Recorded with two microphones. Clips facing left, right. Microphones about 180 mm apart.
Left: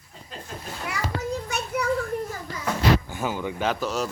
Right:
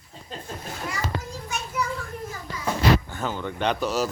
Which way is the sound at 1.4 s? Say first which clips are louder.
Left 2 dB; 60° left (ahead or behind).